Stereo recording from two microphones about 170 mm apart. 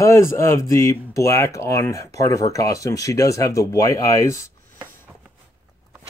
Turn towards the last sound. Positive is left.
turn(degrees=20)  # may be behind; listen again after turning